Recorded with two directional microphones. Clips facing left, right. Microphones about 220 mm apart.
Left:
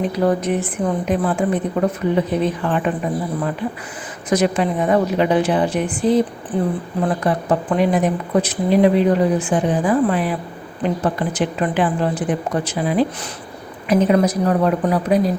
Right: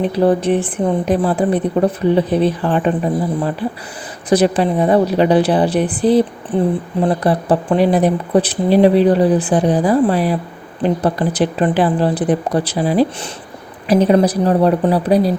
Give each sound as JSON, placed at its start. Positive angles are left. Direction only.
{"t": 0.0, "sound": "speech", "side_deg": -30}